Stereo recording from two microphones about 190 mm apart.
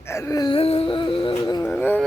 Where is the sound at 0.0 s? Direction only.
15° left (ahead or behind).